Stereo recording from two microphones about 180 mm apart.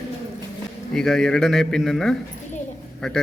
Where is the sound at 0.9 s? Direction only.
5° left (ahead or behind).